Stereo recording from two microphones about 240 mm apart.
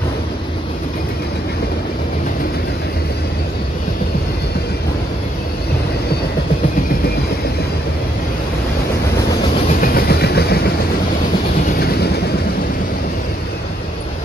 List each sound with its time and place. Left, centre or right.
9.7 s train: left